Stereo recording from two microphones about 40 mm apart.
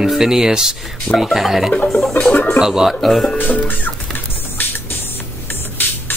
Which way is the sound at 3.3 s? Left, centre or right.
Left.